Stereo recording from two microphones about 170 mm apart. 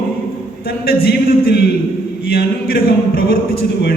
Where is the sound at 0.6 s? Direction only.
65° left (ahead or behind).